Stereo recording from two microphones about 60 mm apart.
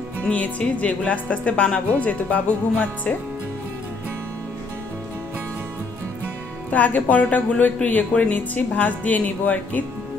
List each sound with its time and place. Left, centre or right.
0.2 s speech: left
6.7 s speech: left